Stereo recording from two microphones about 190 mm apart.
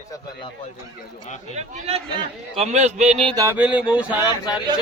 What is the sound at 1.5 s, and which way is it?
A man's voice, 35° right (ahead or behind).